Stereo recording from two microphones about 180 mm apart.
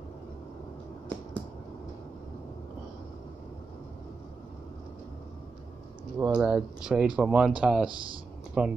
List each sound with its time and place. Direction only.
6.1 s speech: 10° right (ahead or behind)